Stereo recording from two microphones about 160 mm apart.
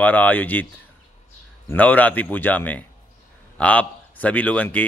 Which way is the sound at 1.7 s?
10° left (ahead or behind).